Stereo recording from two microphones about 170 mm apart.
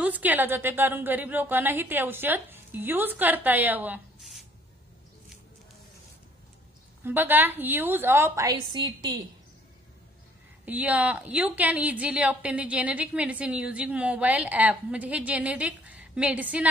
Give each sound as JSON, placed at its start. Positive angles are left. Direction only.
{"t": 0.0, "sound": "a woman's voice", "side_deg": -10}
{"t": 7.1, "sound": "a woman's voice", "side_deg": -10}
{"t": 10.6, "sound": "a woman's voice", "side_deg": -10}